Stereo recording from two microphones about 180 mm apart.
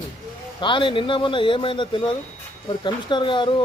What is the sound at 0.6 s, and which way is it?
Speech, 25° left (ahead or behind).